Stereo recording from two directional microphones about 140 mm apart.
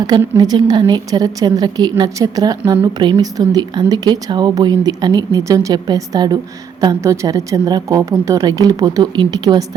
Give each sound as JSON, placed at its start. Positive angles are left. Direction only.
{"t": 0.3, "sound": "speech", "side_deg": -30}